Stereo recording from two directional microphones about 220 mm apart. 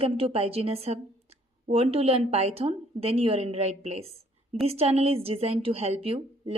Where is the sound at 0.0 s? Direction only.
25° right (ahead or behind).